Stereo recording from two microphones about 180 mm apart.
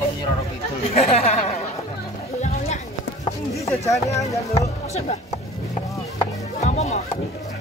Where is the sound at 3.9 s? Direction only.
15° left (ahead or behind).